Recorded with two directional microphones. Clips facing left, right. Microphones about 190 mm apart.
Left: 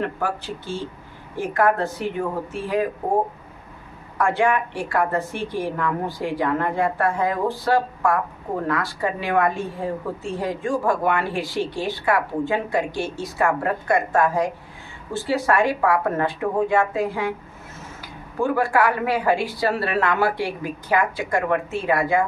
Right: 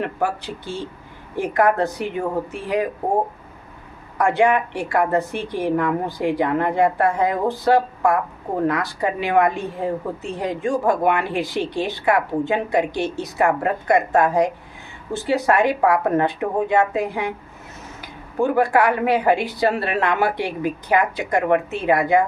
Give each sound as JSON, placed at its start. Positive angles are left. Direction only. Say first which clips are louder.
{"t": 0.0, "sound": "a woman's voice", "louder": "right 2 dB", "side_deg": -15}
{"t": 4.2, "sound": "a woman's voice", "louder": "right 3 dB", "side_deg": -15}